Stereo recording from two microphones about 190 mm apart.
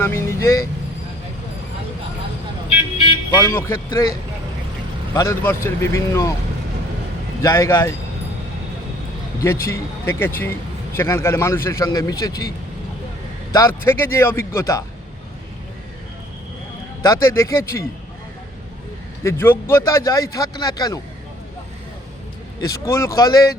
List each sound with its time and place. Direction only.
0.0 s a man's voice: 15° left (ahead or behind)
2.6 s vehicle: 25° left (ahead or behind)
3.3 s a man's voice: 15° left (ahead or behind)
5.1 s a man's voice: 15° left (ahead or behind)
7.4 s a man's voice: 15° left (ahead or behind)
9.4 s a man's voice: 15° left (ahead or behind)
17.1 s a man's voice: 15° left (ahead or behind)
19.2 s a man's voice: 15° left (ahead or behind)
22.9 s a man's voice: 15° left (ahead or behind)